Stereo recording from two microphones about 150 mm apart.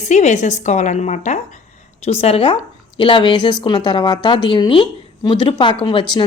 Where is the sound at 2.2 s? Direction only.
40° left (ahead or behind).